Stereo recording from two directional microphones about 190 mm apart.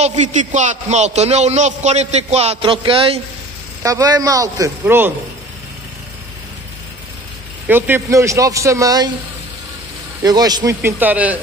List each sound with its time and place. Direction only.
0.0 s a man's voice: 35° right (ahead or behind)
3.8 s a man's voice: 20° right (ahead or behind)
7.6 s a man's voice: 10° right (ahead or behind)
10.2 s a man's voice: 20° right (ahead or behind)